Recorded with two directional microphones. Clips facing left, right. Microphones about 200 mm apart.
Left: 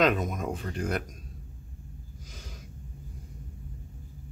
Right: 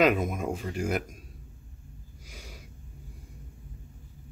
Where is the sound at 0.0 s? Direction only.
10° right (ahead or behind).